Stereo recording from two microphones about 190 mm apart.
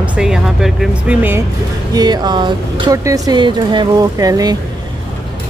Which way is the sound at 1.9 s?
20° right (ahead or behind).